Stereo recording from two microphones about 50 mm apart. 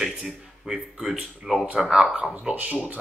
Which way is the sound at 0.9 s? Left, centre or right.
Centre.